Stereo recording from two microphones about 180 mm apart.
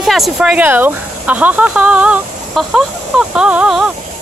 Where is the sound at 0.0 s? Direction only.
Centre (ahead or behind).